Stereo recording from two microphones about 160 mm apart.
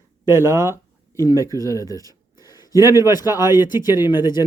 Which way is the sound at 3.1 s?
25° left (ahead or behind).